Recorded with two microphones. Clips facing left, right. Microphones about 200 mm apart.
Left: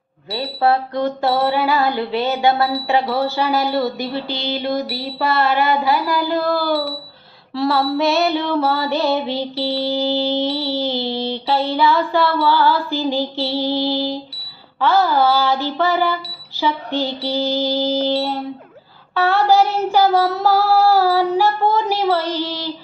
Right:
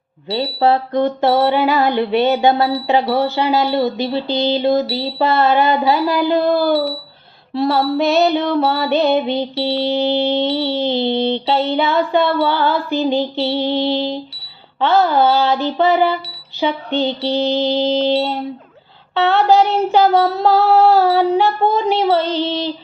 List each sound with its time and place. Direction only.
0.3 s music: 25° right (ahead or behind)